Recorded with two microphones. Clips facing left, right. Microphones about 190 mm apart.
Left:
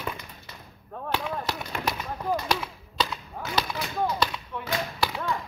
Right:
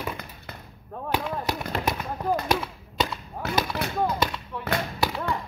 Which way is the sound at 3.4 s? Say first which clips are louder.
Right 3 dB; 60° right (ahead or behind).